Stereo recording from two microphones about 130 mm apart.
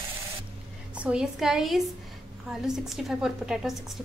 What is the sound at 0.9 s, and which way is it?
A woman's voice, 10° right (ahead or behind).